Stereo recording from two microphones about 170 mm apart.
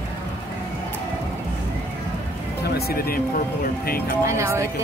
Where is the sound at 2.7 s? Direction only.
65° left (ahead or behind).